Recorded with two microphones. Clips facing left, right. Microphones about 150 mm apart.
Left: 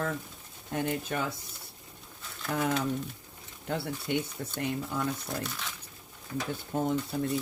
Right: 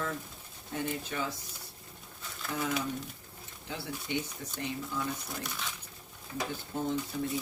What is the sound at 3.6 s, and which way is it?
Speech, 55° left (ahead or behind).